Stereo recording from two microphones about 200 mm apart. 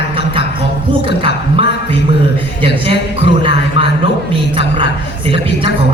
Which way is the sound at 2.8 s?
25° right (ahead or behind).